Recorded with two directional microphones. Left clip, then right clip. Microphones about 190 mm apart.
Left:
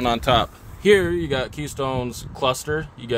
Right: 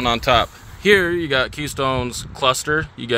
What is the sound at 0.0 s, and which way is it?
Speech, 15° left (ahead or behind).